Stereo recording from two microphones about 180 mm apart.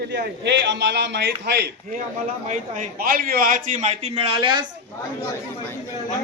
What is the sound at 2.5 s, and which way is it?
A man's voice, 45° right (ahead or behind).